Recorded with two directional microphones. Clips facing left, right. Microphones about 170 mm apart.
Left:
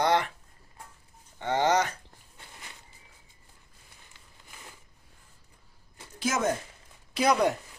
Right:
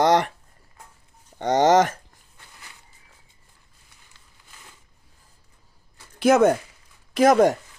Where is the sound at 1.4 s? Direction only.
40° right (ahead or behind).